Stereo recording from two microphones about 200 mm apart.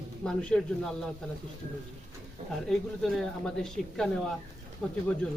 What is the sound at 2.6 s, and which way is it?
Speech, centre (ahead or behind).